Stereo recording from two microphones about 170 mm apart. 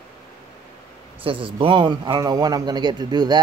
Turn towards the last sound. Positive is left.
turn(degrees=-25)  # may be behind; listen again after turning